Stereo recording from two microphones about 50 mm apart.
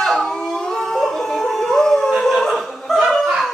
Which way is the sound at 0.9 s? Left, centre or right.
Centre.